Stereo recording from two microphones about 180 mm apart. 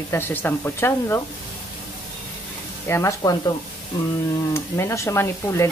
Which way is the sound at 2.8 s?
15° left (ahead or behind).